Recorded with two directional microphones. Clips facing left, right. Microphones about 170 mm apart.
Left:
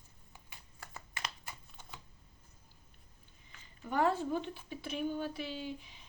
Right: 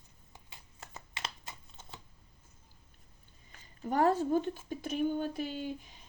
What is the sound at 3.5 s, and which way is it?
Speech, 40° right (ahead or behind).